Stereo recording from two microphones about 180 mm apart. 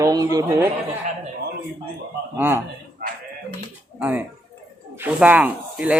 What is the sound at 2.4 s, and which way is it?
Speech, 10° right (ahead or behind).